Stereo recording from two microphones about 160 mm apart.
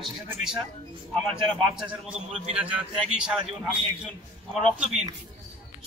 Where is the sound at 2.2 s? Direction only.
40° right (ahead or behind).